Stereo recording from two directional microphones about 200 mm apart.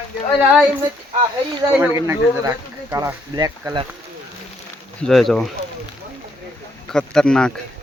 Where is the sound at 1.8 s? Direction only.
15° right (ahead or behind).